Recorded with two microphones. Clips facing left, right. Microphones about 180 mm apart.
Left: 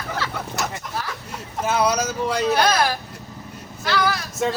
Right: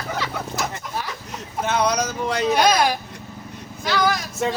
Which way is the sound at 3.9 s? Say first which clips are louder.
Right 1 dB; 15° right (ahead or behind).